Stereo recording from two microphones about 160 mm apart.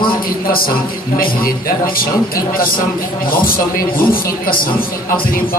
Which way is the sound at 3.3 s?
65° left (ahead or behind).